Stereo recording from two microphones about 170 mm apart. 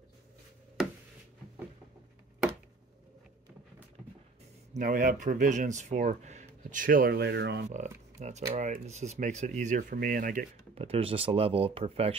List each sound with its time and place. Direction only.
0.8 s a sound: centre (ahead or behind)
4.7 s speech: 55° right (ahead or behind); by 7.6 s 80° right
8.2 s speech: 45° right (ahead or behind)
10.7 s speech: 35° right (ahead or behind)